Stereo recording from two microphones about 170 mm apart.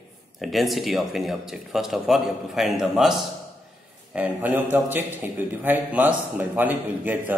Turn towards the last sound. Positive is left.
turn(degrees=-10)  # may be behind; listen again after turning